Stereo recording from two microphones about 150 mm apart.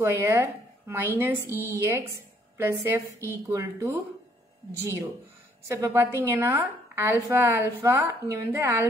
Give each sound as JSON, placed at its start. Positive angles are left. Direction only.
{"t": 0.0, "sound": "a woman's voice", "side_deg": -15}
{"t": 5.7, "sound": "a woman's voice", "side_deg": -20}